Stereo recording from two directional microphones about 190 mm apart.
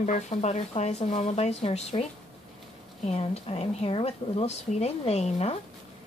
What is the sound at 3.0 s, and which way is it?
A woman's voice, 30° left (ahead or behind).